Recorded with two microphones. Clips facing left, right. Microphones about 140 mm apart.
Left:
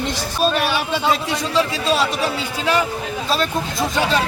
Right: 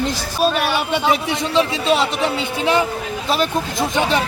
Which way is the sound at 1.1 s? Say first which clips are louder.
Right 1 dB; 20° right (ahead or behind).